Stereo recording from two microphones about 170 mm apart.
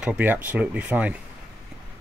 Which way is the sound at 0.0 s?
10° right (ahead or behind).